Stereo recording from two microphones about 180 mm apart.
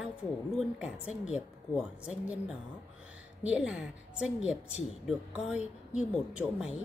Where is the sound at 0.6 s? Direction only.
5° right (ahead or behind).